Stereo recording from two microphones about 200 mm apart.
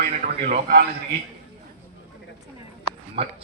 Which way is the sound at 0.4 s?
45° right (ahead or behind).